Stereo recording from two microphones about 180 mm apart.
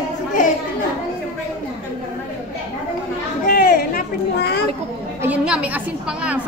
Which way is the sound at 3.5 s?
55° left (ahead or behind).